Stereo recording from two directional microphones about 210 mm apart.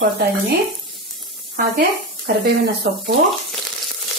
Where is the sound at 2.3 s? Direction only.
40° right (ahead or behind).